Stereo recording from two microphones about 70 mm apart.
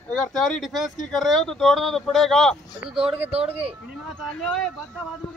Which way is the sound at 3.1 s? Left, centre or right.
Right.